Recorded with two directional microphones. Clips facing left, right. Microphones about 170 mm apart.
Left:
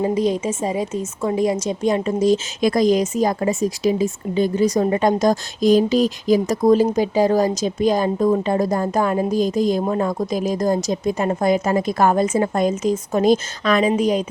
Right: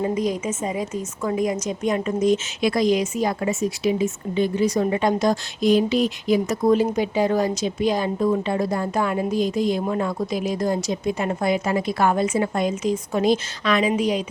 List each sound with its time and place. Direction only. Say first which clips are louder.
0.0 s a woman's voice: left 4 dB; 30° left (ahead or behind); by 14.3 s 45° left (ahead or behind)